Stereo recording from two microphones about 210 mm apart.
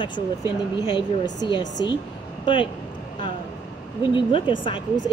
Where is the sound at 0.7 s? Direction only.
20° left (ahead or behind).